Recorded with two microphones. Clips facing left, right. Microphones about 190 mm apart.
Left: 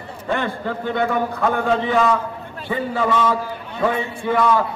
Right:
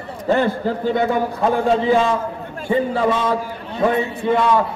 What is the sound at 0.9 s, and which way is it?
Mantra, 25° right (ahead or behind).